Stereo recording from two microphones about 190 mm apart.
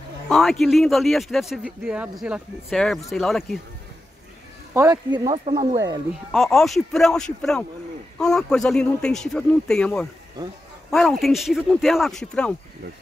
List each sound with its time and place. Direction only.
0.3 s speech: centre (ahead or behind)
4.7 s speech: 15° right (ahead or behind)
6.3 s speech: centre (ahead or behind)